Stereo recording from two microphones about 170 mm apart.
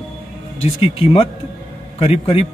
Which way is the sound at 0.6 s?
35° left (ahead or behind).